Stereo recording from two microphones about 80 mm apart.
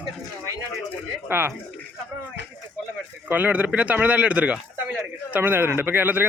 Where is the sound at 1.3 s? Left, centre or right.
Right.